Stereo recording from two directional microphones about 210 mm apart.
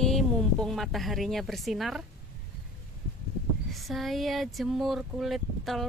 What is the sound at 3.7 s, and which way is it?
Speech, centre (ahead or behind).